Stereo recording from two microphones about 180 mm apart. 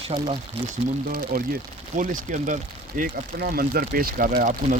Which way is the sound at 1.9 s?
45° right (ahead or behind).